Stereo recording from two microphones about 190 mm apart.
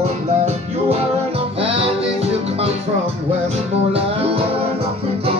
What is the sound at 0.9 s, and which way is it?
Music, 30° right (ahead or behind).